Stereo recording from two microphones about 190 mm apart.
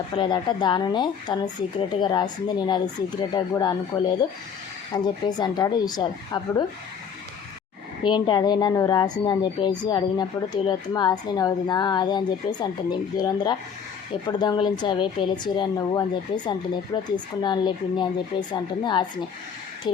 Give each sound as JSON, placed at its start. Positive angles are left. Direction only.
{"t": 0.2, "sound": "a woman's voice", "side_deg": 25}
{"t": 4.9, "sound": "a woman's voice", "side_deg": 25}
{"t": 8.0, "sound": "a woman's voice", "side_deg": 25}